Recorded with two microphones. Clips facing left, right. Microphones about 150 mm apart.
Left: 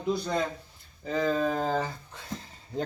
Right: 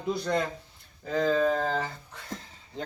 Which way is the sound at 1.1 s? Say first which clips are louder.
Right 2 dB; 15° left (ahead or behind).